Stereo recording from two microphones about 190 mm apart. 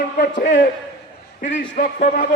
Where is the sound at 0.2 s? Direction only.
45° left (ahead or behind).